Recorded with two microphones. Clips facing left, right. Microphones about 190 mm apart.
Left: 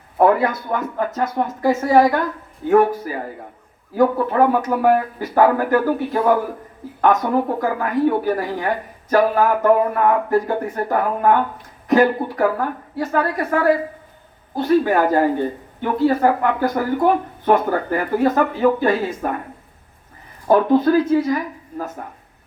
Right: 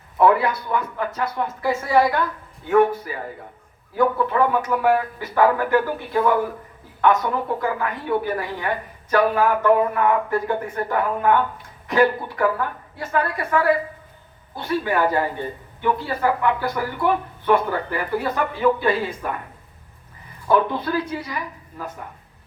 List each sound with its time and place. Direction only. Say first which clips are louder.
0.2 s a woman's voice: left 2 dB; 45° left (ahead or behind)
7.0 s a woman's voice: left 3 dB; 40° left (ahead or behind)
20.5 s speech: left 6 dB; 45° left (ahead or behind)